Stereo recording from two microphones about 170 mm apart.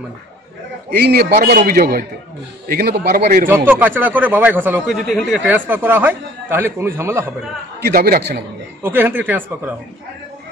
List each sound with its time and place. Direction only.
0.9 s a man's voice: 70° right (ahead or behind)
1.5 s speech: 55° right (ahead or behind)
3.4 s speech: 10° right (ahead or behind)
5.0 s speech: centre (ahead or behind); by 7.3 s 15° right (ahead or behind)
7.8 s speech: 60° right (ahead or behind)
8.8 s speech: 10° right (ahead or behind)